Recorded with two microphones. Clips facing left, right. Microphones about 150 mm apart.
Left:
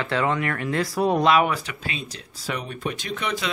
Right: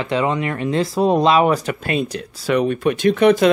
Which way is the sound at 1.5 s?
45° right (ahead or behind).